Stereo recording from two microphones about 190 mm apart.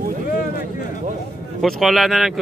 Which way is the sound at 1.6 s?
Centre (ahead or behind).